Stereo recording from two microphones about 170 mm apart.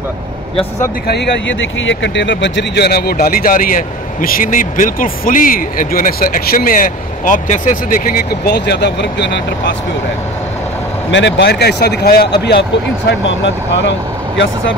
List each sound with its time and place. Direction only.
1.0 s speech: 85° left
11.1 s speech: 90° left; by 12.3 s 65° left (ahead or behind)
13.8 s speech: 90° left